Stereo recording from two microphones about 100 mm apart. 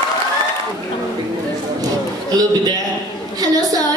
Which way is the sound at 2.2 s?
40° right (ahead or behind).